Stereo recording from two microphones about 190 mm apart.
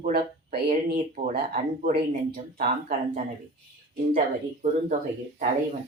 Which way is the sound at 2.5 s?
45° right (ahead or behind).